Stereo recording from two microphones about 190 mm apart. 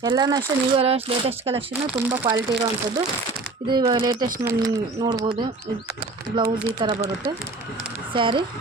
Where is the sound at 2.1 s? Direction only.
15° right (ahead or behind).